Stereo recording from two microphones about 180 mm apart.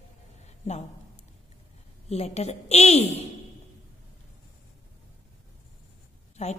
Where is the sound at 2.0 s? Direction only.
35° left (ahead or behind).